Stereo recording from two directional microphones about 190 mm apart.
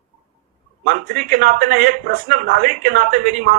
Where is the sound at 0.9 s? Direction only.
45° right (ahead or behind).